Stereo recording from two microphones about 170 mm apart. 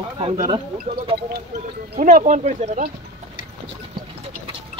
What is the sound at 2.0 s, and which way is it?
Speech, 50° right (ahead or behind).